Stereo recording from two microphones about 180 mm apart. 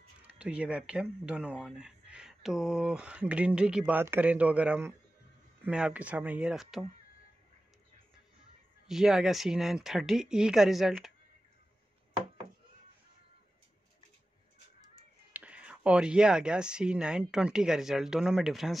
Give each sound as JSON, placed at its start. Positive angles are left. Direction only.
{"t": 0.2, "sound": "speech", "side_deg": -10}
{"t": 8.8, "sound": "speech", "side_deg": 0}
{"t": 15.3, "sound": "speech", "side_deg": -5}